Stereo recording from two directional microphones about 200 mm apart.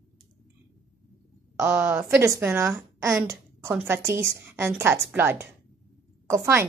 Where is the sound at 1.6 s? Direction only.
15° right (ahead or behind).